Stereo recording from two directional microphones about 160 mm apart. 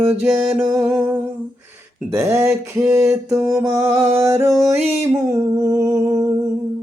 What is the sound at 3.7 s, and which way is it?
Music, 10° right (ahead or behind).